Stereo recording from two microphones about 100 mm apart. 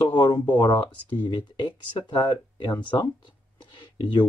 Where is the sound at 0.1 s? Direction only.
45° left (ahead or behind).